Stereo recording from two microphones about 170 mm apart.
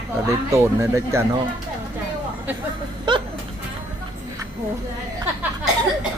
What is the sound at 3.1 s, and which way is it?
Music, 25° right (ahead or behind).